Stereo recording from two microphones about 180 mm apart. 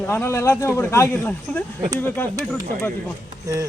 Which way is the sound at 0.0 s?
10° left (ahead or behind).